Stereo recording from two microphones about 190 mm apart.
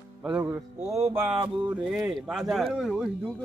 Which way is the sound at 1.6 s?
5° right (ahead or behind).